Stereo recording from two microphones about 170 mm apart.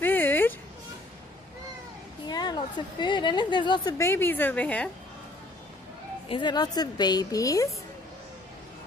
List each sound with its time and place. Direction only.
0.0 s a sound: 10° left (ahead or behind)
2.2 s a woman's voice: 25° left (ahead or behind)
4.0 s a woman's voice: 15° left (ahead or behind)
6.2 s a woman's voice: 30° left (ahead or behind)